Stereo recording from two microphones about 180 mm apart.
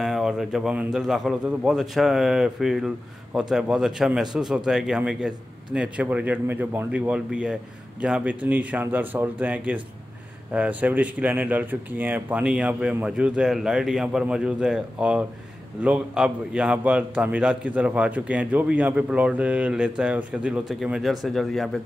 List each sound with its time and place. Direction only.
0.0 s a man's voice: 5° right (ahead or behind)